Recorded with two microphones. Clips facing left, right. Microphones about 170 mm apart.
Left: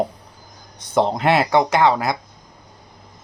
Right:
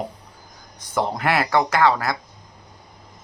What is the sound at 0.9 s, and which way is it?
Speech, 20° left (ahead or behind).